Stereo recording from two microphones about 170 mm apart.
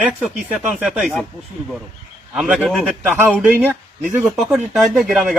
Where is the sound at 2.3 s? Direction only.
5° right (ahead or behind).